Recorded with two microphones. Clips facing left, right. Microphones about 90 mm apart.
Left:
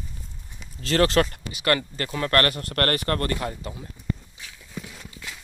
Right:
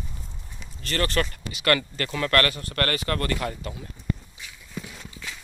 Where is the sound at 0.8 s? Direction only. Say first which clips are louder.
Left 6 dB; 90° left.